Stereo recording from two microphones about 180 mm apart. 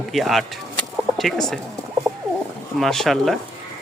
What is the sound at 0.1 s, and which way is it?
Speech, centre (ahead or behind).